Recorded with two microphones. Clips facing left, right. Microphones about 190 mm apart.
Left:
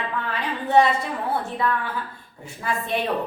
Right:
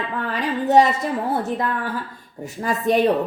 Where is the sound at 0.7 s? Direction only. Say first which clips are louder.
Right 2 dB; 40° right (ahead or behind).